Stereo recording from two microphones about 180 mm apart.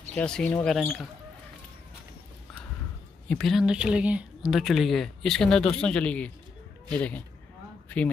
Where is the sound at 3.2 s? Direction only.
5° left (ahead or behind).